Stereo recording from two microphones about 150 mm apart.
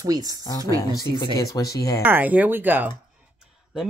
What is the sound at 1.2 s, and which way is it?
Speech, 25° left (ahead or behind).